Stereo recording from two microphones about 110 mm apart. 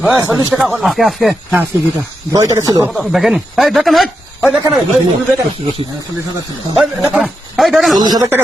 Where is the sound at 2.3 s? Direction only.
30° right (ahead or behind).